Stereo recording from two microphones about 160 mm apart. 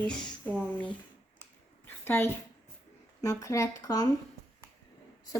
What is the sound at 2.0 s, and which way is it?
A woman's voice, 15° left (ahead or behind).